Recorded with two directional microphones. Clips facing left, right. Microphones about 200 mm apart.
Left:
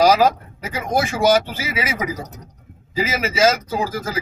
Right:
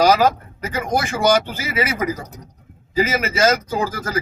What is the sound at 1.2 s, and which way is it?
Speech, 5° left (ahead or behind).